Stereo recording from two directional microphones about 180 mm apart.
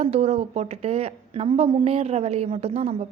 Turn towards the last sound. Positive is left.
turn(degrees=-35)  # may be behind; listen again after turning